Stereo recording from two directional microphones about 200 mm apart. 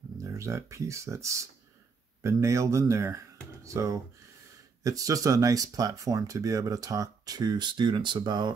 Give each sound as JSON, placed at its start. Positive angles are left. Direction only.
{"t": 0.2, "sound": "speech", "side_deg": -15}